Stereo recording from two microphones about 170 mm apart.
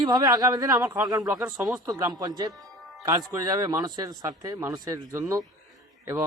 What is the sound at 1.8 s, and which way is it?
Speech, 20° right (ahead or behind).